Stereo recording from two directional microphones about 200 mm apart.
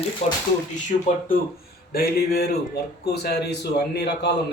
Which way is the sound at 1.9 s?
50° left (ahead or behind).